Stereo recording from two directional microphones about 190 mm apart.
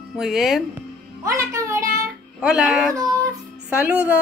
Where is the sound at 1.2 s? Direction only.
15° right (ahead or behind).